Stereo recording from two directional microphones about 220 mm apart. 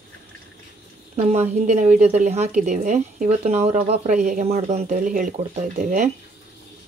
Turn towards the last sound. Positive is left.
turn(degrees=-35)  # may be behind; listen again after turning